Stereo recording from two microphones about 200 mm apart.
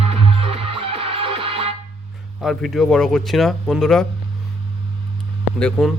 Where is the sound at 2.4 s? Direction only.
Centre (ahead or behind).